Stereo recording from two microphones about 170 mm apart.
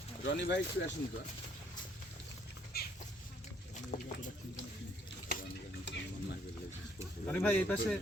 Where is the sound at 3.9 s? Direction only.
45° left (ahead or behind).